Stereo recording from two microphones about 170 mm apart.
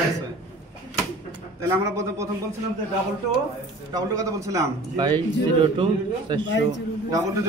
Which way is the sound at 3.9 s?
20° right (ahead or behind).